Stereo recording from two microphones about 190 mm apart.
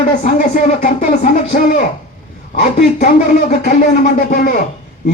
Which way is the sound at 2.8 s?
40° left (ahead or behind).